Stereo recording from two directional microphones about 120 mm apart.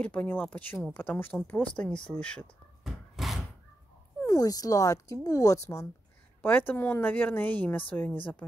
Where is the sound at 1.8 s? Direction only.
10° left (ahead or behind).